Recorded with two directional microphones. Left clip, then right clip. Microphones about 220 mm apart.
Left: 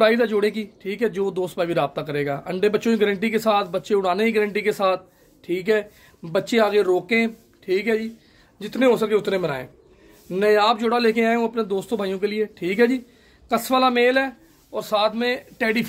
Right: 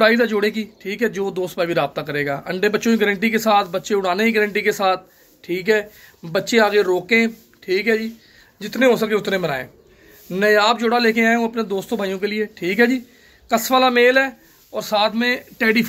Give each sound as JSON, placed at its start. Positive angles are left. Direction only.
{"t": 0.0, "sound": "a man's voice", "side_deg": 5}